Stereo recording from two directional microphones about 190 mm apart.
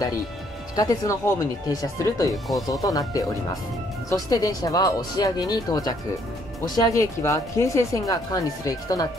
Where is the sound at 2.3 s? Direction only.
Centre (ahead or behind).